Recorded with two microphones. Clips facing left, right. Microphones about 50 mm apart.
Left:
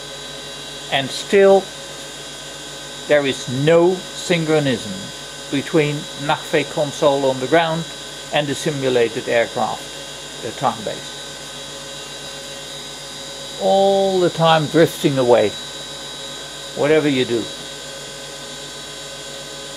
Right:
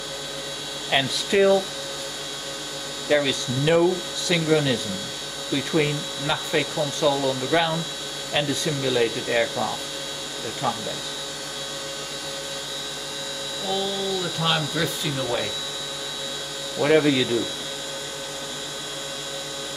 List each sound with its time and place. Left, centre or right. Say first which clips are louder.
0.8 s speech: left 2 dB; centre
3.1 s speech: left 5 dB; centre
13.7 s speech: left 13 dB; centre
16.7 s speech: left 4 dB; centre